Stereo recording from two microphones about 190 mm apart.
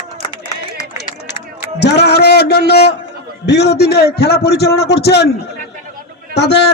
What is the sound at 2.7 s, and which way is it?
Speech, 60° left (ahead or behind).